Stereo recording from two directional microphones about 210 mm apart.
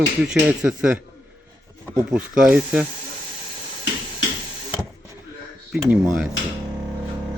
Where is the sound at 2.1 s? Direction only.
5° right (ahead or behind).